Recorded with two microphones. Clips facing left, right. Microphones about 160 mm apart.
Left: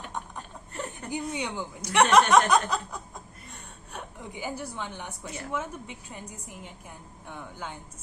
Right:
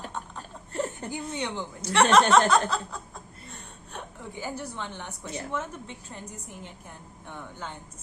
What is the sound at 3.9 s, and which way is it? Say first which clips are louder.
A woman's voice: even; 15° left (ahead or behind).